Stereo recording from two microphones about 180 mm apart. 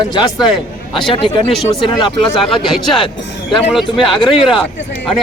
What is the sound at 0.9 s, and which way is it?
Speech, 25° left (ahead or behind).